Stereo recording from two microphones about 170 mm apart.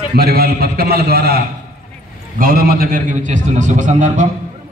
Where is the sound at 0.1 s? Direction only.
65° right (ahead or behind); by 4.3 s 45° right (ahead or behind).